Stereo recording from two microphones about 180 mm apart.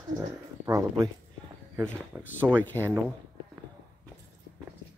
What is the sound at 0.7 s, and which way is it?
Speech, 20° right (ahead or behind).